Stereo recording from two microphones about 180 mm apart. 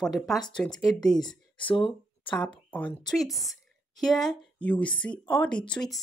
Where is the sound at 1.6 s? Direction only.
30° left (ahead or behind).